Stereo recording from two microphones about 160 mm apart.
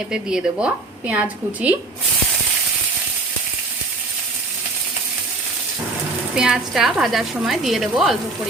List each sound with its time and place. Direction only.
0.1 s a woman's voice: 5° right (ahead or behind)
6.3 s a woman's voice: 5° right (ahead or behind)